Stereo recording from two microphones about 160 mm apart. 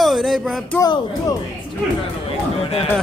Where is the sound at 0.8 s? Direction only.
15° left (ahead or behind).